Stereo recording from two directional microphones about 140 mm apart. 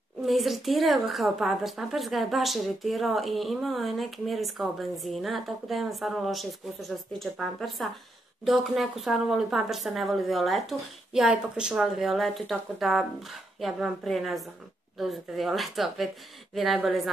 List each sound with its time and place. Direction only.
0.2 s speech: centre (ahead or behind)